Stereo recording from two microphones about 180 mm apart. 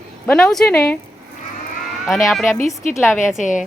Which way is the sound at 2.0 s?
Centre (ahead or behind).